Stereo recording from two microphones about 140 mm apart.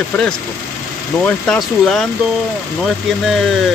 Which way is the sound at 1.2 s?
5° left (ahead or behind).